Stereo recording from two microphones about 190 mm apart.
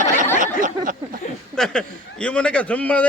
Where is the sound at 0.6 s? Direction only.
45° right (ahead or behind).